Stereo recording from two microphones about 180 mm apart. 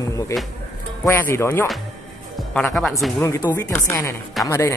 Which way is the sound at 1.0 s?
15° left (ahead or behind).